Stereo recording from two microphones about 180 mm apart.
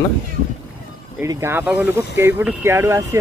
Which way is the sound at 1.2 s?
15° right (ahead or behind).